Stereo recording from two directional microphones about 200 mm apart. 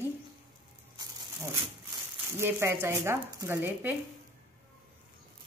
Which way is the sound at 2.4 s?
10° right (ahead or behind).